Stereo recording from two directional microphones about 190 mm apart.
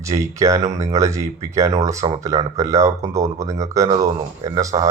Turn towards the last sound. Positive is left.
turn(degrees=-15)  # may be behind; listen again after turning